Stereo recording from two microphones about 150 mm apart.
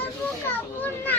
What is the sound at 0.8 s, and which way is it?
Children playing, 10° left (ahead or behind).